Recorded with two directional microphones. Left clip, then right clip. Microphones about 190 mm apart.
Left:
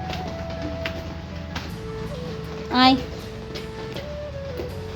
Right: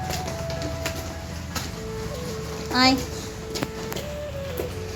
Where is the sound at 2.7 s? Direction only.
40° left (ahead or behind).